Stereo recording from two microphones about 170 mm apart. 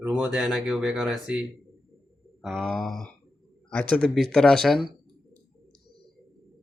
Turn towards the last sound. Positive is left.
turn(degrees=0)  # may be behind; listen again after turning